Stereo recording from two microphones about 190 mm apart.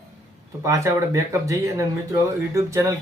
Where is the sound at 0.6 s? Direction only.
15° right (ahead or behind).